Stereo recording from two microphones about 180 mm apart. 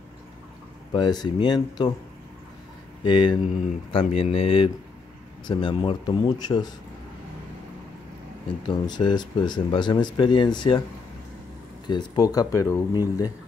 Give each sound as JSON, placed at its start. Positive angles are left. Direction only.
{"t": 0.9, "sound": "speech", "side_deg": 25}
{"t": 3.0, "sound": "speech", "side_deg": 25}
{"t": 8.6, "sound": "speech", "side_deg": 25}
{"t": 11.9, "sound": "speech", "side_deg": 20}